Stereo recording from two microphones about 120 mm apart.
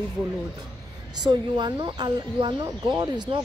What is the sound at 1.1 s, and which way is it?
Speech, 40° right (ahead or behind).